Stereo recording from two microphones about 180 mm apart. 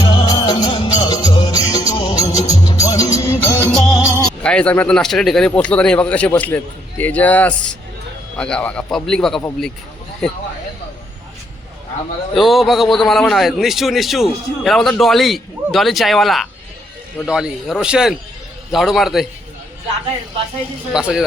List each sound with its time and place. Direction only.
0.0 s music: 20° left (ahead or behind)
3.9 s music: 5° right (ahead or behind)
4.4 s a man's voice: 5° left (ahead or behind)
12.3 s a man's voice: centre (ahead or behind)
20.9 s a man's voice: 5° right (ahead or behind)